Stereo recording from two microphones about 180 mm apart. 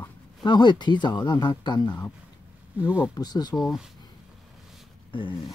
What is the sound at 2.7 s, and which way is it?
Speech, 5° right (ahead or behind).